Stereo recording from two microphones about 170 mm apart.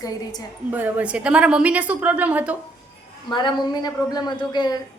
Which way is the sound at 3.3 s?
25° left (ahead or behind).